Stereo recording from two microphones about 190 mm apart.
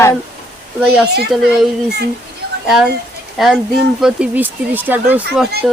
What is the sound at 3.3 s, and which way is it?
Speech, centre (ahead or behind).